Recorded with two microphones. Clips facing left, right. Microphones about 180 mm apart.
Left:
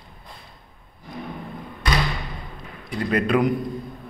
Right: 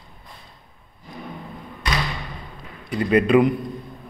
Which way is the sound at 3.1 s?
5° right (ahead or behind).